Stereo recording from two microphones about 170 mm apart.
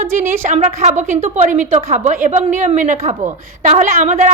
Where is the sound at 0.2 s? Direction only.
50° right (ahead or behind).